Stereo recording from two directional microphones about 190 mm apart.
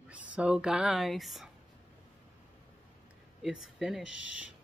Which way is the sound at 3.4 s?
5° right (ahead or behind).